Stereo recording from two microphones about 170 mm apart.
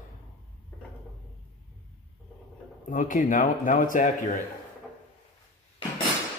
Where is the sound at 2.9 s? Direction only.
50° left (ahead or behind).